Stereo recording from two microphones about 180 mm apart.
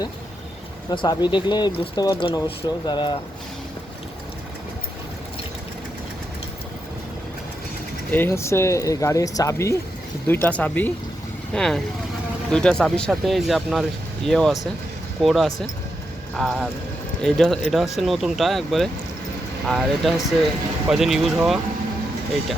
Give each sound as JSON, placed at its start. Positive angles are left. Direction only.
{"t": 0.9, "sound": "speech", "side_deg": 25}
{"t": 8.1, "sound": "speech", "side_deg": 15}